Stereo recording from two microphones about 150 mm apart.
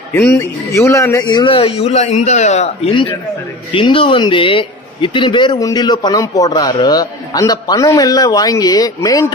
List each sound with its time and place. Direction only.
0.1 s speech: 5° left (ahead or behind)
0.3 s a man's voice: 20° left (ahead or behind)